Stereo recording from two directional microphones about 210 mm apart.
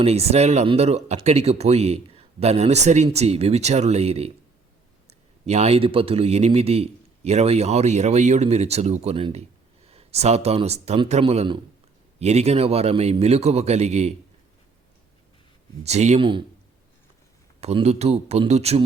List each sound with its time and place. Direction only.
0.0 s a man's voice: 30° right (ahead or behind)
15.8 s a man's voice: 30° right (ahead or behind)
17.6 s speech: 30° right (ahead or behind)